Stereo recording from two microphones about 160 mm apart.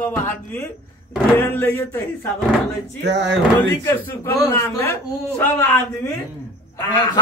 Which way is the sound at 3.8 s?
20° left (ahead or behind).